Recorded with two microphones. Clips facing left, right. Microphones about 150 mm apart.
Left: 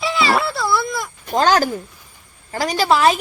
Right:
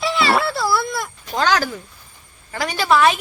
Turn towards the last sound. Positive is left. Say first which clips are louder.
# left 1 dB
turn(degrees=35)  # may be behind; listen again after turning